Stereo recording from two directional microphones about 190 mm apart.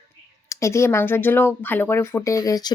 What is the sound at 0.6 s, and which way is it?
Speech, 15° left (ahead or behind).